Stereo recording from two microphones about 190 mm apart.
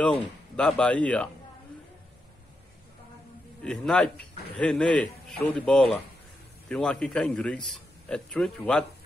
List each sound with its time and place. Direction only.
0.0 s speech: 5° left (ahead or behind)
3.6 s a man's voice: 5° left (ahead or behind)